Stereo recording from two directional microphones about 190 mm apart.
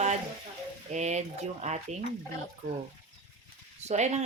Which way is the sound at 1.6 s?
35° right (ahead or behind).